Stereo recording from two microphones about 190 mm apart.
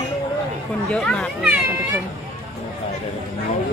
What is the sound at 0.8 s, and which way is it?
Speech, 5° left (ahead or behind).